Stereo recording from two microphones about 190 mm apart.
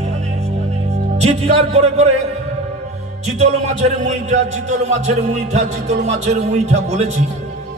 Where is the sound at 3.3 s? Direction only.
35° right (ahead or behind).